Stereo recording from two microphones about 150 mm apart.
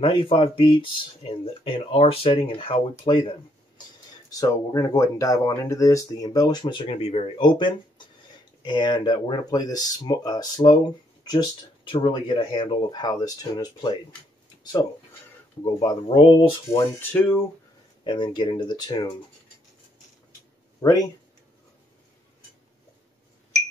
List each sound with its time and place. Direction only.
0.0 s speech: 35° left (ahead or behind)
4.3 s speech: 20° left (ahead or behind)
17.1 s speech: 10° left (ahead or behind)
18.0 s speech: 30° left (ahead or behind)